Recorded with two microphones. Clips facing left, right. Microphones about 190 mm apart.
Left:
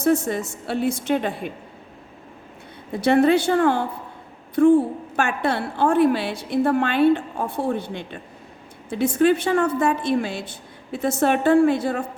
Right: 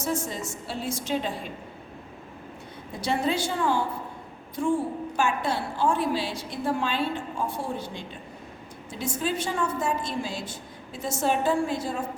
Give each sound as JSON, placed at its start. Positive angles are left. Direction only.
{"t": 0.0, "sound": "a woman's voice", "side_deg": 60}
{"t": 3.0, "sound": "a woman's voice", "side_deg": 60}